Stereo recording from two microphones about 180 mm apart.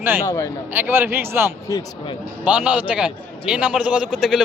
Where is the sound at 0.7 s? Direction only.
10° right (ahead or behind).